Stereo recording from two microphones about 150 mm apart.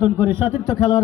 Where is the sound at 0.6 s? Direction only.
20° left (ahead or behind).